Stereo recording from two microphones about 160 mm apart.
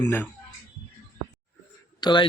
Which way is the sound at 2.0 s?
30° left (ahead or behind).